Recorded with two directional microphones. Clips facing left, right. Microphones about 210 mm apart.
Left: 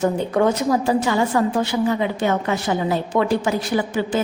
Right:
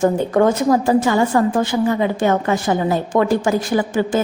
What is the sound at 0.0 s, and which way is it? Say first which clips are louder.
A woman's voice: right 3 dB; 50° right (ahead or behind).